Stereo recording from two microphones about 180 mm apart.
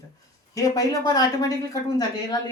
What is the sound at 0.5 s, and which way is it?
A woman's voice, 20° left (ahead or behind).